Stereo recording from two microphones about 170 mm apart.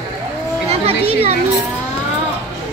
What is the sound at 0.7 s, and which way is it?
Children playing, 35° right (ahead or behind).